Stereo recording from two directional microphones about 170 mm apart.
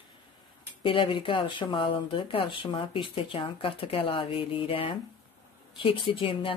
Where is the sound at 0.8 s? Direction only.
30° left (ahead or behind).